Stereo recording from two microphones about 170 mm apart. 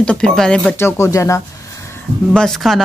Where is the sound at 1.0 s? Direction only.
15° left (ahead or behind).